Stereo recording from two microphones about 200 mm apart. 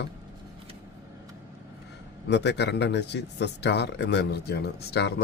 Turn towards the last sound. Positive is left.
turn(degrees=55)  # may be behind; listen again after turning